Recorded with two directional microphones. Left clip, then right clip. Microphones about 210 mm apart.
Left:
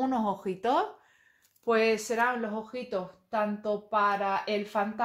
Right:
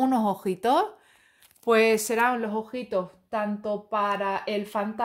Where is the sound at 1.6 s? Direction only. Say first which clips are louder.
Right 5 dB; 50° right (ahead or behind).